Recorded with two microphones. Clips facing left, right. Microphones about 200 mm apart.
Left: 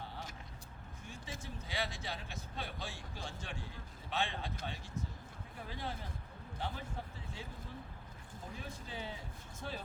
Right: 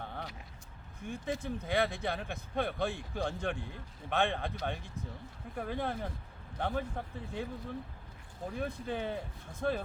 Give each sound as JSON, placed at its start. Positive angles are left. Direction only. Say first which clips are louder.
{"t": 1.0, "sound": "speech", "louder": "right 12 dB", "side_deg": -55}
{"t": 8.5, "sound": "speech", "louder": "right 11 dB", "side_deg": -55}